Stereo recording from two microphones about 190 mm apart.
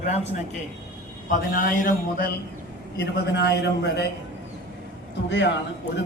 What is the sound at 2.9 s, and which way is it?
A man's voice, 60° left (ahead or behind).